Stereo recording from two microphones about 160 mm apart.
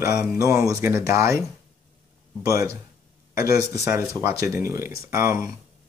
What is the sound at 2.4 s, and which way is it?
Speech, 20° right (ahead or behind).